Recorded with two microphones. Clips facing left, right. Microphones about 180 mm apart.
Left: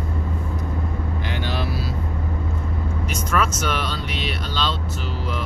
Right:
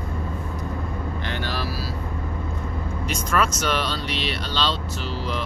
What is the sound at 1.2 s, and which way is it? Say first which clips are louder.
Vehicle: left 2 dB; 20° left (ahead or behind).